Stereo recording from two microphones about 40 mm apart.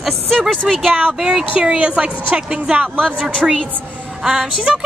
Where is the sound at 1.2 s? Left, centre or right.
Centre.